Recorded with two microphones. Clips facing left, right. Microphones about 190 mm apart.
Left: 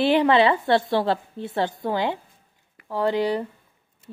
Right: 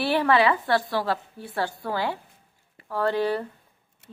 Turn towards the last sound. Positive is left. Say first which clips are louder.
# left 2 dB
turn(degrees=15)  # may be behind; listen again after turning